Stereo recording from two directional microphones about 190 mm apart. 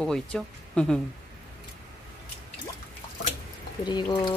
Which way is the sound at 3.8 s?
20° left (ahead or behind).